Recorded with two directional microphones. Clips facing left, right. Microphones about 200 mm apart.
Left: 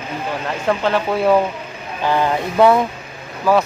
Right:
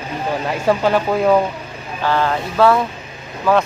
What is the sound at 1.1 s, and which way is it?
Speech, 5° left (ahead or behind).